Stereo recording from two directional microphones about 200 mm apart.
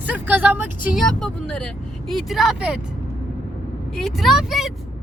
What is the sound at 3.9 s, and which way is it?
Speech, centre (ahead or behind).